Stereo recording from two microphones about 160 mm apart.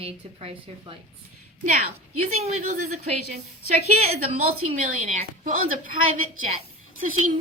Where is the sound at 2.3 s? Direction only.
45° right (ahead or behind).